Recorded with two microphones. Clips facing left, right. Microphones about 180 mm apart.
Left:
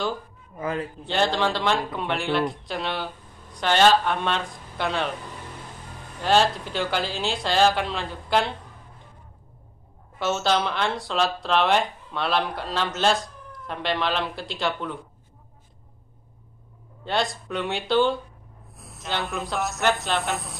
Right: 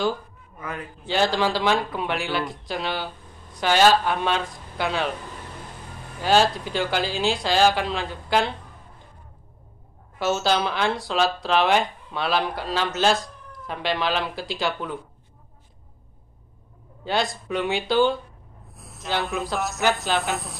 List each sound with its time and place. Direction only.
0.6 s a man's voice: 30° left (ahead or behind)
1.0 s speech: centre (ahead or behind)
6.2 s speech: centre (ahead or behind)
10.1 s speech: centre (ahead or behind)
17.0 s speech: centre (ahead or behind)